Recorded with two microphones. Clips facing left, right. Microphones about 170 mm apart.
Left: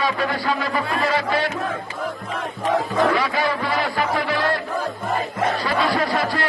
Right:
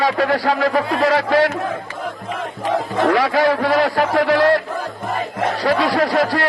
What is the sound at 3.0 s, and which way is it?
A man's voice, 85° right.